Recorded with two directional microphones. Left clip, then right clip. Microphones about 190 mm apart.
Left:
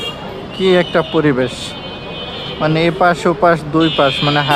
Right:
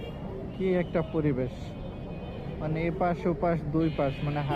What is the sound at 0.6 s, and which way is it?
Speech, 30° left (ahead or behind).